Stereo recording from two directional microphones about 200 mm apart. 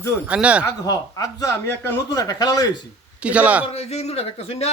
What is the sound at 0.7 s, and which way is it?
Speech, 20° left (ahead or behind).